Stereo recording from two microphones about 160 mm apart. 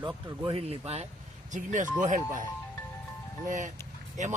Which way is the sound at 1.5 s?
50° right (ahead or behind).